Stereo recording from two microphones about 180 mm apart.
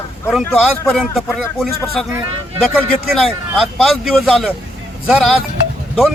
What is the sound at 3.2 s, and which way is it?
Speech, centre (ahead or behind).